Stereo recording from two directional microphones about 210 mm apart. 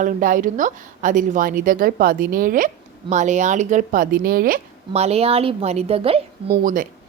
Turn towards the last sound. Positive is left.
turn(degrees=-40)  # may be behind; listen again after turning